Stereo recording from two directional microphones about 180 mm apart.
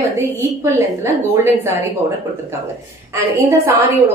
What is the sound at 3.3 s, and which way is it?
Speech, 15° right (ahead or behind).